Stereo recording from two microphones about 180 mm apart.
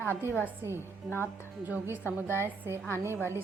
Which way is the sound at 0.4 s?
15° right (ahead or behind).